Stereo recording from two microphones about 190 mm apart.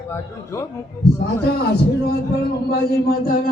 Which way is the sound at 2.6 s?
50° left (ahead or behind).